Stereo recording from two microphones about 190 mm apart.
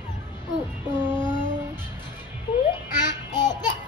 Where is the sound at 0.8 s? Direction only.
10° right (ahead or behind).